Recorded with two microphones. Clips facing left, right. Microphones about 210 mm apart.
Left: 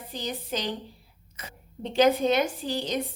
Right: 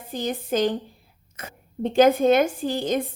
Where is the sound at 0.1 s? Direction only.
50° right (ahead or behind).